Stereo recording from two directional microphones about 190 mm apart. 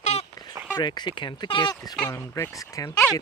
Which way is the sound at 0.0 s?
35° left (ahead or behind).